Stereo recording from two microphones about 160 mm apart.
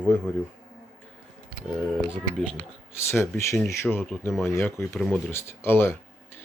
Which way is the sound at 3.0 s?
15° left (ahead or behind).